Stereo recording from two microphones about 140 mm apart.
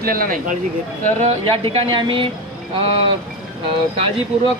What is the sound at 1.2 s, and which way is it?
Speech, 45° right (ahead or behind).